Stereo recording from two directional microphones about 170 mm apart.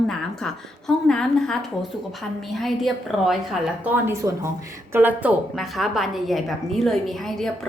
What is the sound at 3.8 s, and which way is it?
A woman's voice, 10° right (ahead or behind).